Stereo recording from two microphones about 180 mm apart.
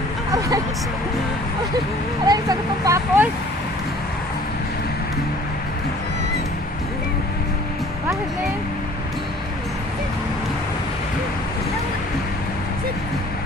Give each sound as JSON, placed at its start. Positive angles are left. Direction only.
{"t": 2.2, "sound": "speech", "side_deg": -20}